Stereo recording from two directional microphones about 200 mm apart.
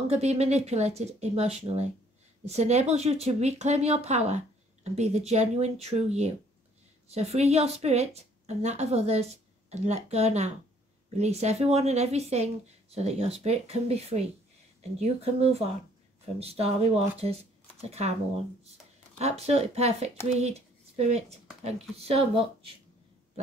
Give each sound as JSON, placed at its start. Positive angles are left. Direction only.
{"t": 0.1, "sound": "speech", "side_deg": -30}